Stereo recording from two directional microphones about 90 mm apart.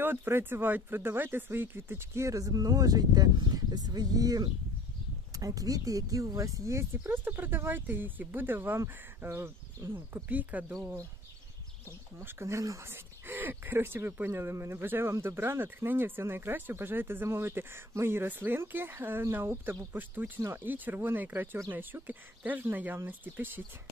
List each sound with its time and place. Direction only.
0.0 s speech: 25° right (ahead or behind)
12.2 s speech: 30° right (ahead or behind)